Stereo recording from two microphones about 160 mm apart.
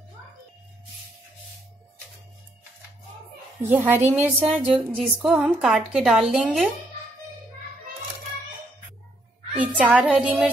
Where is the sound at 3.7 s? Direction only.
10° right (ahead or behind).